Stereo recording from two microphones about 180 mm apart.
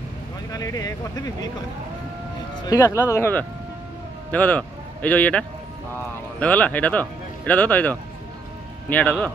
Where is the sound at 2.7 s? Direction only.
15° left (ahead or behind).